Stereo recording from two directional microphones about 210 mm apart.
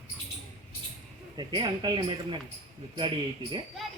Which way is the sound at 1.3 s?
20° right (ahead or behind).